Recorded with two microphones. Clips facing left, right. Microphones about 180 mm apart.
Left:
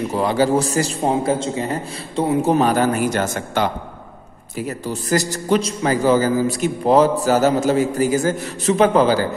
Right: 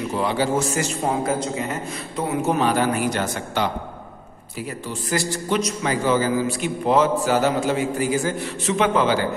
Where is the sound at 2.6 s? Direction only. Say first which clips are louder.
Left 3 dB; 45° left (ahead or behind).